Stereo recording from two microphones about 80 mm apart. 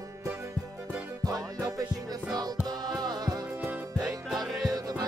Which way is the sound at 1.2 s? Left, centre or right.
Right.